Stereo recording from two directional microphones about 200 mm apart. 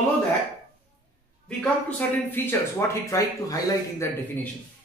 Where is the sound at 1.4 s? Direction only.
5° left (ahead or behind).